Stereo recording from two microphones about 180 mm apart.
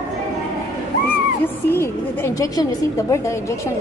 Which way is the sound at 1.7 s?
15° left (ahead or behind).